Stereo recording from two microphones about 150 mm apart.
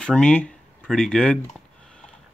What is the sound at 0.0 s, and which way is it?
Speech, 5° left (ahead or behind).